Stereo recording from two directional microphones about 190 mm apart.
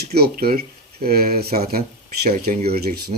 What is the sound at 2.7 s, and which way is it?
Speech, 55° right (ahead or behind).